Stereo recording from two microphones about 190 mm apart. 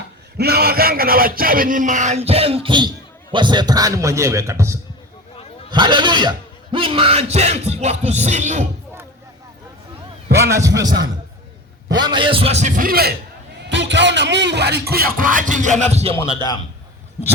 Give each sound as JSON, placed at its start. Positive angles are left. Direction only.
{"t": 0.3, "sound": "a sound", "side_deg": -55}
{"t": 3.3, "sound": "a man's voice", "side_deg": -25}
{"t": 10.3, "sound": "a man's voice", "side_deg": -15}
{"t": 13.7, "sound": "speech", "side_deg": -70}